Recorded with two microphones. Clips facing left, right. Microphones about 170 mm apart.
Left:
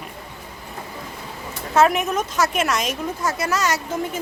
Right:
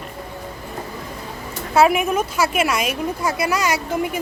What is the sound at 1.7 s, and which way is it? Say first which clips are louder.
A woman's voice: right 2 dB; 10° right (ahead or behind).